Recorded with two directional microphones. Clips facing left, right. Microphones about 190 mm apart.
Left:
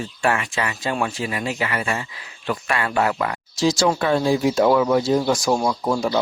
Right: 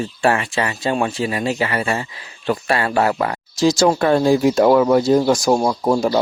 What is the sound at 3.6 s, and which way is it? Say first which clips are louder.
Speech: right 4 dB; 45° right (ahead or behind).